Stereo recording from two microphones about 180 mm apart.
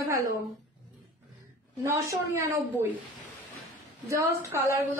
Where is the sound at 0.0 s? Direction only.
15° right (ahead or behind).